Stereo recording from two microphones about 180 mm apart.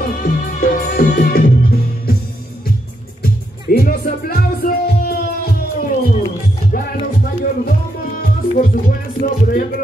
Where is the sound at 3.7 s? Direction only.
55° left (ahead or behind).